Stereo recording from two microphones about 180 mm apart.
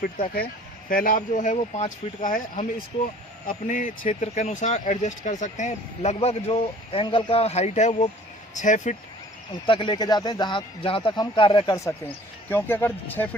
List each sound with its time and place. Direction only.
0.0 s speech: 55° left (ahead or behind)
9.5 s speech: 25° left (ahead or behind); by 13.2 s 10° left (ahead or behind)